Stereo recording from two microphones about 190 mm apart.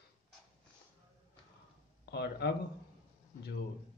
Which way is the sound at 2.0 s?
60° left (ahead or behind).